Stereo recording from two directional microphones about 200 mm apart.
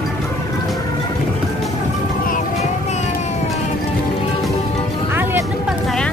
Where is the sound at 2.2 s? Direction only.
40° left (ahead or behind).